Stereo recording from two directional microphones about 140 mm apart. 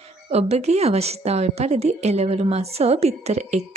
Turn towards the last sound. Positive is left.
turn(degrees=-50)  # may be behind; listen again after turning